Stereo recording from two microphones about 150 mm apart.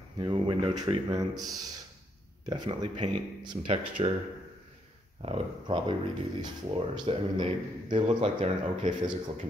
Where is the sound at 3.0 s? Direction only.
30° right (ahead or behind).